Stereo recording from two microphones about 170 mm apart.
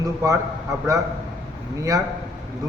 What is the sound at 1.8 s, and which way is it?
Speech, 20° right (ahead or behind).